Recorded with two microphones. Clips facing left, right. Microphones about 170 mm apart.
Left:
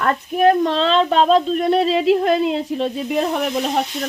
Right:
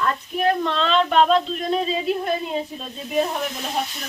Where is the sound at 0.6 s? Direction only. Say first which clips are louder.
Left 4 dB; 35° left (ahead or behind).